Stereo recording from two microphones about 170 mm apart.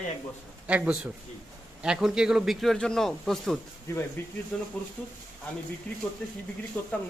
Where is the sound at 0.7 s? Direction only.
5° right (ahead or behind).